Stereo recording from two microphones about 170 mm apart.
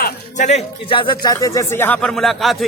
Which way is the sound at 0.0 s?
45° left (ahead or behind).